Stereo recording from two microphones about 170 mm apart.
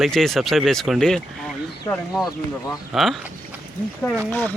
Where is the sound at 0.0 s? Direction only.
Centre (ahead or behind).